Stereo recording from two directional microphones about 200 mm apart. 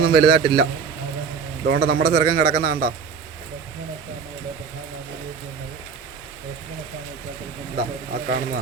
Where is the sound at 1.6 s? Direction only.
55° right (ahead or behind).